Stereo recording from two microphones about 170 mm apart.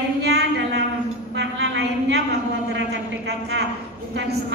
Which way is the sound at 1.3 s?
90° right.